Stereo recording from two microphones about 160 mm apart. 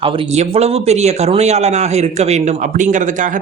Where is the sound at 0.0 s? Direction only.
40° right (ahead or behind).